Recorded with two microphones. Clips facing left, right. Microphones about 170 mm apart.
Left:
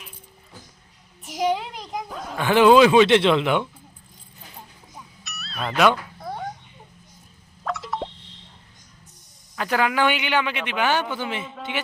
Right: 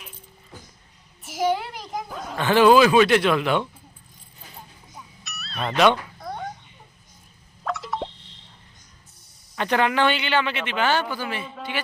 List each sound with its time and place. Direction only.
1.6 s a sound: centre (ahead or behind)
2.4 s speech: 15° left (ahead or behind)
5.2 s music: centre (ahead or behind)
7.6 s plop: centre (ahead or behind)
9.6 s speech: 5° left (ahead or behind); by 11.5 s 20° left (ahead or behind)